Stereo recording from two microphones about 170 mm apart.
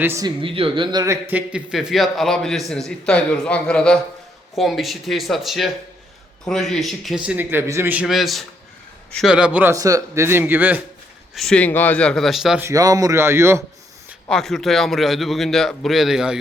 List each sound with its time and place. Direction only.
0.0 s speech: 15° right (ahead or behind)
0.3 s speech: 30° right (ahead or behind); by 7.2 s centre (ahead or behind)
7.3 s speech: 10° right (ahead or behind)
11.3 s speech: 5° left (ahead or behind)
12.6 s speech: 20° right (ahead or behind)
14.3 s speech: centre (ahead or behind)